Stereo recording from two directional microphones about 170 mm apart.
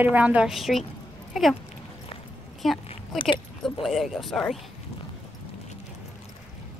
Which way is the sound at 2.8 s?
30° left (ahead or behind).